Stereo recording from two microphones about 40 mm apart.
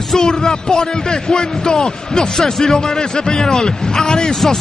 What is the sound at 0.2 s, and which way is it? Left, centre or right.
Speech, centre.